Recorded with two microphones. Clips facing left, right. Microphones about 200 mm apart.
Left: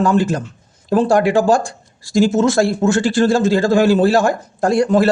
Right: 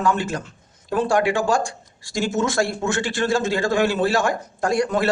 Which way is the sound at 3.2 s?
35° left (ahead or behind).